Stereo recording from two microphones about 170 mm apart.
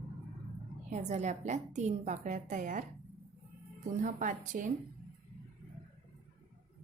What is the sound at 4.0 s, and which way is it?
Speech, 50° right (ahead or behind).